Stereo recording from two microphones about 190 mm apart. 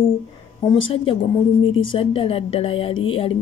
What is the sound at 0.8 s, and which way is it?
Speech, 30° left (ahead or behind).